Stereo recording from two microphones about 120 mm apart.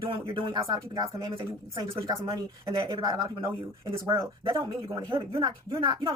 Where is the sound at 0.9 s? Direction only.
35° right (ahead or behind).